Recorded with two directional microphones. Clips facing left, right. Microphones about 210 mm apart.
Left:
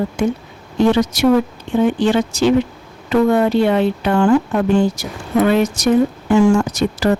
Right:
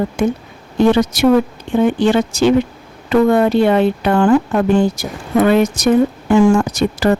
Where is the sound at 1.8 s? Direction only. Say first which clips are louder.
Right 2 dB; 55° right (ahead or behind).